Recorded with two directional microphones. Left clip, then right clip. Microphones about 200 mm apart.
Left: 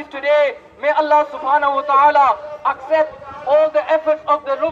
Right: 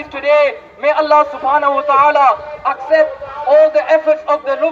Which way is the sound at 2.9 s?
5° left (ahead or behind).